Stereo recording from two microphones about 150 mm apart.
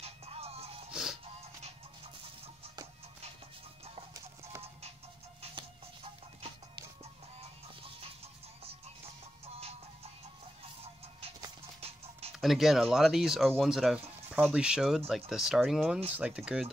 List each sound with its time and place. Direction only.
0.0 s music: 40° right (ahead or behind)
10.8 s music: 40° right (ahead or behind)
12.4 s speech: centre (ahead or behind)